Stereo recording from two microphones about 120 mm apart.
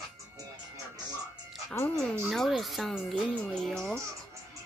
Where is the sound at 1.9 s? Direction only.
5° left (ahead or behind).